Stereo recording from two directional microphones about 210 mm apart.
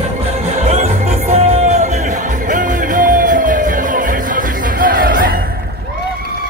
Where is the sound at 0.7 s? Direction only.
30° right (ahead or behind).